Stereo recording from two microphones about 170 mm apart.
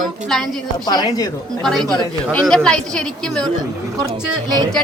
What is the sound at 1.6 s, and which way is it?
A woman's voice, centre (ahead or behind).